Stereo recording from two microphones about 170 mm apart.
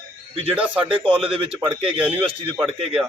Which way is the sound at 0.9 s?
30° right (ahead or behind).